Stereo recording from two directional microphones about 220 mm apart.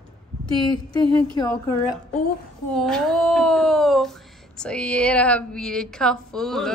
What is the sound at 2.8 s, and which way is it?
Speech, centre (ahead or behind).